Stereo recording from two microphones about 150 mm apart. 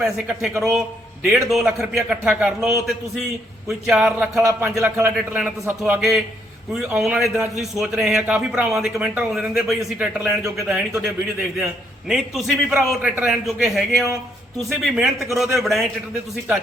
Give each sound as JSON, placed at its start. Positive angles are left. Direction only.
{"t": 0.6, "sound": "a man's voice", "side_deg": 0}
{"t": 4.4, "sound": "a man's voice", "side_deg": -20}
{"t": 5.1, "sound": "a man's voice", "side_deg": -10}